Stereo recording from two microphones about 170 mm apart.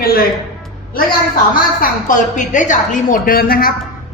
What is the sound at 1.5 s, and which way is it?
A woman's voice, 55° left (ahead or behind).